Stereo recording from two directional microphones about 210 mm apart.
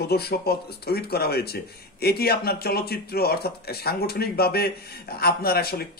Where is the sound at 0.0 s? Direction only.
50° left (ahead or behind).